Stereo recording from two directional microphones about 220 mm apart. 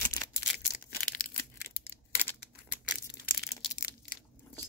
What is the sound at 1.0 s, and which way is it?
Crumpling, 40° left (ahead or behind).